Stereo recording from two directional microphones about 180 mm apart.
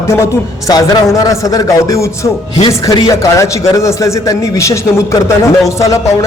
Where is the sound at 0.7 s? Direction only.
20° left (ahead or behind).